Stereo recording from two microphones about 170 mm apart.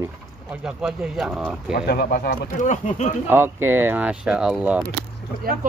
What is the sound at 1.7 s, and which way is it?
Speech, 70° left (ahead or behind).